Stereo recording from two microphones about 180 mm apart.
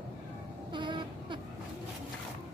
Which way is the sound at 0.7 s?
25° right (ahead or behind).